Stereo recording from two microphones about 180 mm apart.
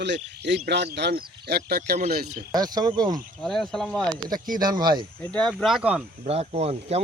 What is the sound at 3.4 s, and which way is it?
Speech, 5° left (ahead or behind).